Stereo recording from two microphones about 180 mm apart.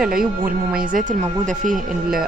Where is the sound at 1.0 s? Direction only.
45° right (ahead or behind).